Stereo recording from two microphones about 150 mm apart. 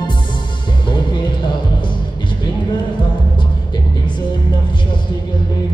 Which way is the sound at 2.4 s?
30° left (ahead or behind).